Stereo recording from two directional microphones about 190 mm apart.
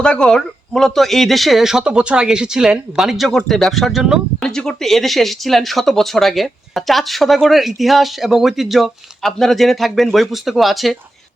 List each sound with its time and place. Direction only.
0.0 s speech: 5° left (ahead or behind)